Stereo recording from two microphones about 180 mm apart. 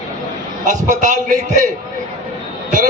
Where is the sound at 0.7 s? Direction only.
45° right (ahead or behind).